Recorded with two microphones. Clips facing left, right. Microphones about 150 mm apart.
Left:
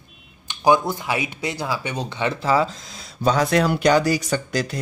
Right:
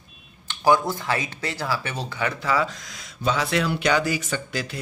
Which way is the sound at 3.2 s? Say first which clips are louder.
Left 5 dB; 40° left (ahead or behind).